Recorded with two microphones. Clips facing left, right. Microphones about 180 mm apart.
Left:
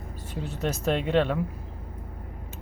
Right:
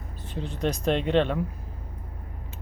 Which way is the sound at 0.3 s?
5° left (ahead or behind).